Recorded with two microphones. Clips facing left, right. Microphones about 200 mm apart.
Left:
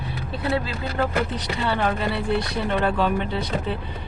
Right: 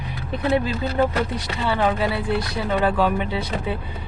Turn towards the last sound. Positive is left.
turn(degrees=-10)  # may be behind; listen again after turning